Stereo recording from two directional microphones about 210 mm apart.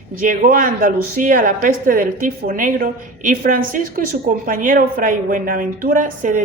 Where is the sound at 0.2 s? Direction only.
40° right (ahead or behind).